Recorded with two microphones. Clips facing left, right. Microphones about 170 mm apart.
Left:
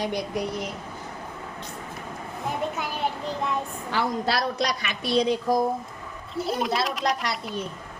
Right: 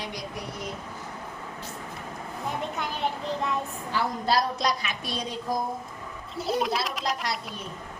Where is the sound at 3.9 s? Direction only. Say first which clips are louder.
Left 1 dB; 85° left; by 5.3 s 70° left (ahead or behind).